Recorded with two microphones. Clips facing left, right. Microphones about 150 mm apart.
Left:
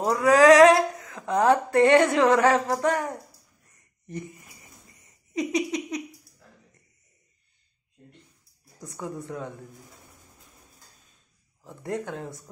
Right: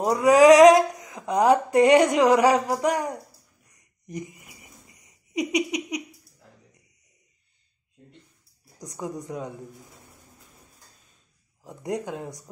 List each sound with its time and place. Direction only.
0.0 s speech: 15° right (ahead or behind)
3.7 s a sound: 15° right (ahead or behind)
5.0 s giggle: 15° right (ahead or behind)
8.7 s speech: 15° right (ahead or behind)
11.6 s speech: 15° right (ahead or behind)